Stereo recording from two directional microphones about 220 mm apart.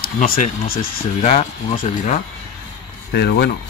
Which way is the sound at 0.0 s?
40° left (ahead or behind).